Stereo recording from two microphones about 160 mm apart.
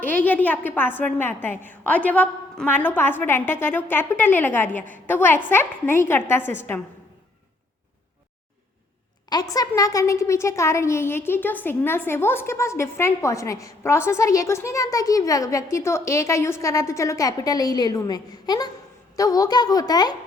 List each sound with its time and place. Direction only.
0.0 s a woman's voice: 10° left (ahead or behind)
9.3 s a woman's voice: 25° left (ahead or behind)